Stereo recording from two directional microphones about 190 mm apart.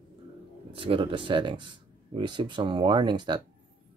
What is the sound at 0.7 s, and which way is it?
Speech, 30° right (ahead or behind).